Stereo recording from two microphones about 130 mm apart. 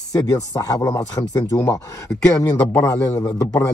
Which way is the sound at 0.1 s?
25° left (ahead or behind).